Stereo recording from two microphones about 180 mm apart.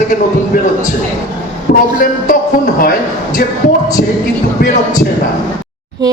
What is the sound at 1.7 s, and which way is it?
Speech, 60° left (ahead or behind).